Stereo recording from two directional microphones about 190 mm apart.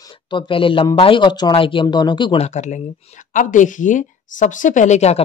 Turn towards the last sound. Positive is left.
turn(degrees=35)  # may be behind; listen again after turning